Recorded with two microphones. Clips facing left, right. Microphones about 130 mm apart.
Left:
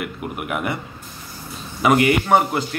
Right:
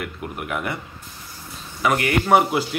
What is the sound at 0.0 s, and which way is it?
Speech, 10° left (ahead or behind).